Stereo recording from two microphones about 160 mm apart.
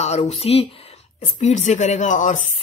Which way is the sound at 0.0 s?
40° left (ahead or behind).